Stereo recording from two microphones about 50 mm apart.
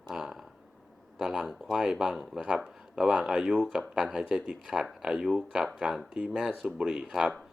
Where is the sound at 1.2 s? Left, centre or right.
Centre.